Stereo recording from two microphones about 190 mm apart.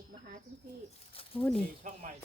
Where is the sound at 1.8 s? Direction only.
40° right (ahead or behind).